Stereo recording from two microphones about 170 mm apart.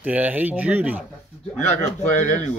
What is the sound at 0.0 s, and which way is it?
Speech, 10° right (ahead or behind).